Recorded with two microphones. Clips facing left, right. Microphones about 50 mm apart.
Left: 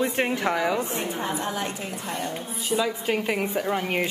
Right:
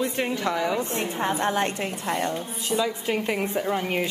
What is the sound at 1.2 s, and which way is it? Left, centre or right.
A woman's voice, right.